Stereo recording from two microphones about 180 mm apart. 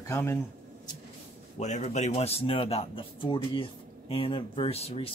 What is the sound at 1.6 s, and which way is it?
A man's voice, 40° left (ahead or behind).